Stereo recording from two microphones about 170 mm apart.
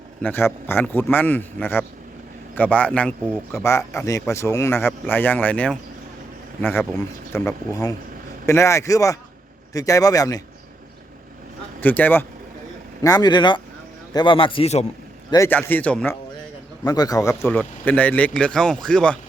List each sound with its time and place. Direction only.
0.2 s a man's voice: 10° left (ahead or behind)
11.8 s a man's voice: 10° left (ahead or behind)
13.0 s a man's voice: 20° left (ahead or behind); by 14.8 s 40° left (ahead or behind)
15.4 s a man's voice: 10° left (ahead or behind)
16.8 s a man's voice: 20° left (ahead or behind); by 19.1 s 5° left (ahead or behind)